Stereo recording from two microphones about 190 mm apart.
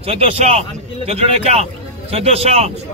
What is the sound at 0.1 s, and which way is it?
Speech, 30° right (ahead or behind).